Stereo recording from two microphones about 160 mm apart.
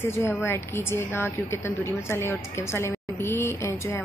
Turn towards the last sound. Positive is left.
turn(degrees=20)  # may be behind; listen again after turning